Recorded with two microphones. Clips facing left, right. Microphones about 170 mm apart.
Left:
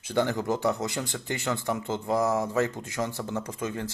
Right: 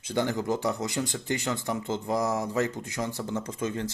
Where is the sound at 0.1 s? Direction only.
15° right (ahead or behind).